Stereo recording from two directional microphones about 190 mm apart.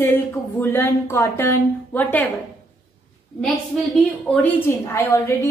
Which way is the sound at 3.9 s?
10° left (ahead or behind).